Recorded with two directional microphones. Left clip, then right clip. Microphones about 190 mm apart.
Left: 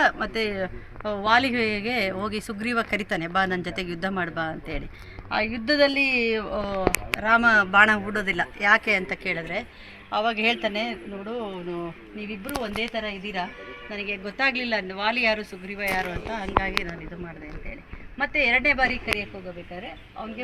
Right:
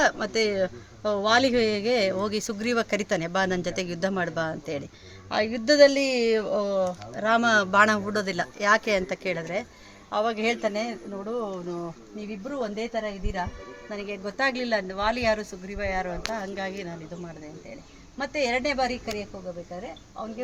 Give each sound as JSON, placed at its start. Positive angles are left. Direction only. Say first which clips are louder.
{"t": 0.0, "sound": "speech", "louder": "even", "side_deg": -50}
{"t": 10.1, "sound": "a woman's voice", "louder": "left 2 dB", "side_deg": -25}
{"t": 18.2, "sound": "a woman's voice", "louder": "left 5 dB", "side_deg": -25}